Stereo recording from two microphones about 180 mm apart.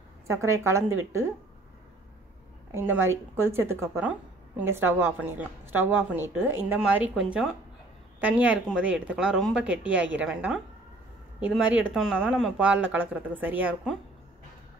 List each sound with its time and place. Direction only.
0.3 s speech: 15° right (ahead or behind)
2.7 s speech: 10° right (ahead or behind)